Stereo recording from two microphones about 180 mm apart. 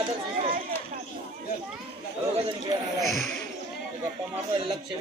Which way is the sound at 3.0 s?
Centre (ahead or behind).